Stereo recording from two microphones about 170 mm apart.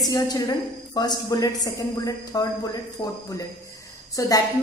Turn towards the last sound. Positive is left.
turn(degrees=20)  # may be behind; listen again after turning